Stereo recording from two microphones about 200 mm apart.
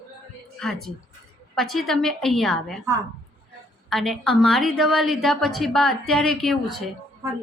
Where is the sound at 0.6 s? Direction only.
Centre (ahead or behind).